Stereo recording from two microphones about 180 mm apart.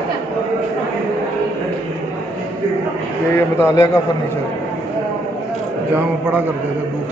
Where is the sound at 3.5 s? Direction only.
15° left (ahead or behind).